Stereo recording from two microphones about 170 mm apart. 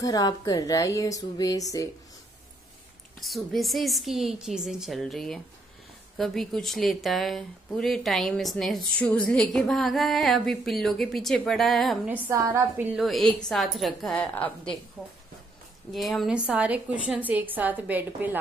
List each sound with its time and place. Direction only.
0.0 s speech: 20° left (ahead or behind)
3.2 s speech: centre (ahead or behind)
12.1 s a woman's voice: 10° right (ahead or behind)
13.0 s speech: centre (ahead or behind)
15.9 s a woman's voice: centre (ahead or behind)